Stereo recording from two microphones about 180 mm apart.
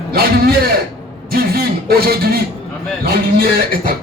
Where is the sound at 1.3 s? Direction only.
55° right (ahead or behind).